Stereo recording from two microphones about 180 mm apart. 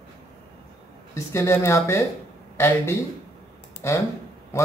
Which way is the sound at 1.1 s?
15° left (ahead or behind).